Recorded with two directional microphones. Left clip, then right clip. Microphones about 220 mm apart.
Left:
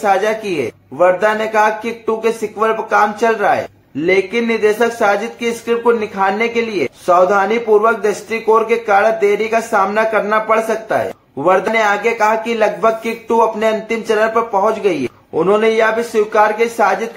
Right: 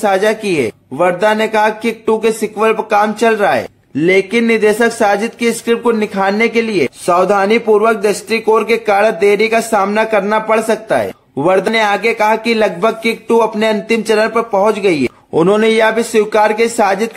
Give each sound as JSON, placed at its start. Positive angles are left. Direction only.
{"t": 0.0, "sound": "speech", "side_deg": -45}